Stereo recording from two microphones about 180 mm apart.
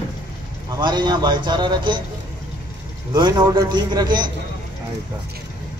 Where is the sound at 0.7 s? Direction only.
25° right (ahead or behind).